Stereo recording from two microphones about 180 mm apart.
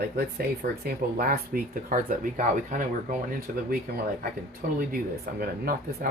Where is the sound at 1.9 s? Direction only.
50° right (ahead or behind).